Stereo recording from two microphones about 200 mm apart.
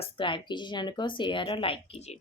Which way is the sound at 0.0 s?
25° left (ahead or behind).